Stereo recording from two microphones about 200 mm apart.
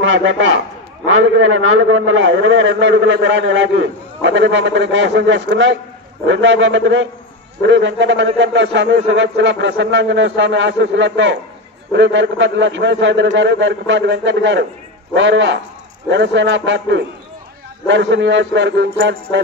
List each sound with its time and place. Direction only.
0.0 s a man's voice: 65° right (ahead or behind)